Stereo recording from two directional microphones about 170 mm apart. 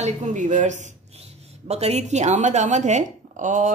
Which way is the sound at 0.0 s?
45° right (ahead or behind).